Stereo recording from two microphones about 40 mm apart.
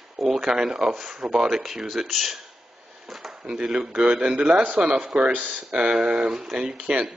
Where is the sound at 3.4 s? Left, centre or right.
Right.